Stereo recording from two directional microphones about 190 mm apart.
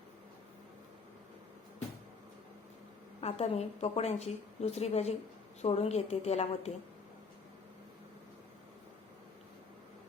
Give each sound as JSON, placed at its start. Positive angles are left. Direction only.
{"t": 3.2, "sound": "a woman's voice", "side_deg": 35}